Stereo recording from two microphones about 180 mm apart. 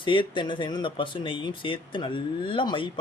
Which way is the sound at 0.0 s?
25° left (ahead or behind).